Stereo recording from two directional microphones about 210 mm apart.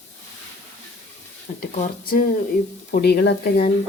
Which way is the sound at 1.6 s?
45° left (ahead or behind).